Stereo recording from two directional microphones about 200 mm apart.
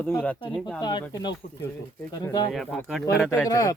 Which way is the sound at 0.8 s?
20° left (ahead or behind).